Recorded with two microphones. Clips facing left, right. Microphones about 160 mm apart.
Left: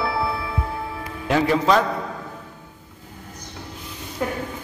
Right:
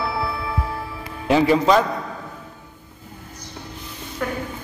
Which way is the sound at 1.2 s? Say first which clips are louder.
Right 3 dB; 5° right (ahead or behind).